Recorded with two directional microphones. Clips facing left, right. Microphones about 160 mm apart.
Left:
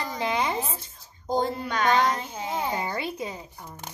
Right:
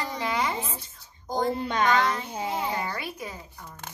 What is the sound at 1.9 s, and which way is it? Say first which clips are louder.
A child's voice: left 1 dB; 25° left (ahead or behind).